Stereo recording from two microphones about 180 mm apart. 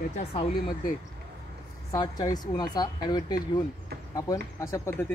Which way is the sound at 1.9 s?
20° left (ahead or behind).